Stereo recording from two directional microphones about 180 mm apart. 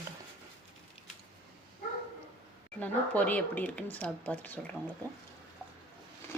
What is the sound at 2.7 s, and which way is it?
Speech, 10° left (ahead or behind).